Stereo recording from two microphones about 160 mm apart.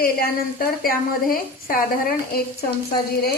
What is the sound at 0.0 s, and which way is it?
A woman's voice, 70° left (ahead or behind).